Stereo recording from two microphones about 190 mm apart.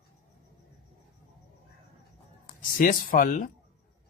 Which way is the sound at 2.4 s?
45° left (ahead or behind).